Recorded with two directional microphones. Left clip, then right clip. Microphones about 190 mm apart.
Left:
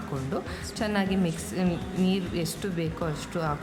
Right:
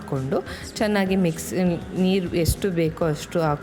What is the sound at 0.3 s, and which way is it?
A woman's voice, 25° right (ahead or behind).